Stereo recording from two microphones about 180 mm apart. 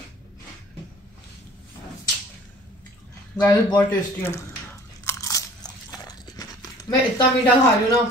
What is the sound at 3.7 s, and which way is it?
Speech, 10° left (ahead or behind).